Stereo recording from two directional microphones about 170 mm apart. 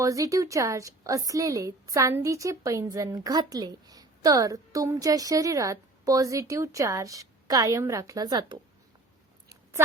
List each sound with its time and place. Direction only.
0.0 s a woman's voice: 20° right (ahead or behind)